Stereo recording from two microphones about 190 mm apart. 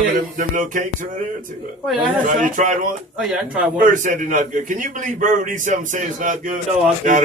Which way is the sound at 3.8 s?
45° right (ahead or behind).